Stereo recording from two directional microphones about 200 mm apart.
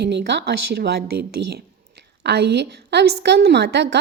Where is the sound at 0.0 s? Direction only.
55° right (ahead or behind).